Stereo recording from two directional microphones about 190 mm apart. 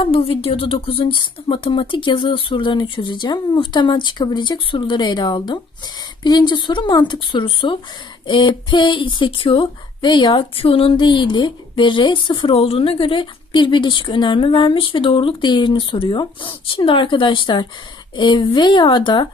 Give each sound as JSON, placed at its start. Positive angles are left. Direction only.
{"t": 0.0, "sound": "speech", "side_deg": 30}